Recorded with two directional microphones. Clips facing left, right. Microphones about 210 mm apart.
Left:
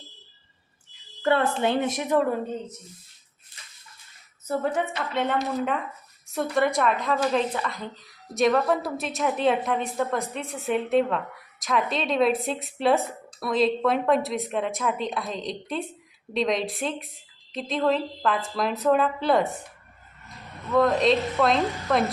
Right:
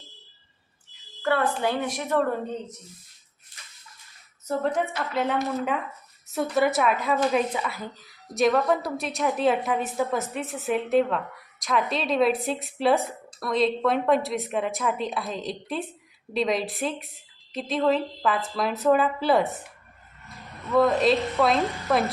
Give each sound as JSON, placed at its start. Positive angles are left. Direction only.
{"t": 1.2, "sound": "a woman's voice", "side_deg": 25}
{"t": 4.4, "sound": "a woman's voice", "side_deg": 5}